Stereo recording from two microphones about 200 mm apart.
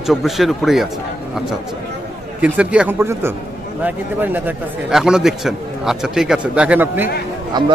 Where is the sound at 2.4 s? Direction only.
5° right (ahead or behind).